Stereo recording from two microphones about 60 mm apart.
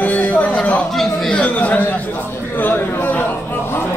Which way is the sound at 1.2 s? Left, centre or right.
Left.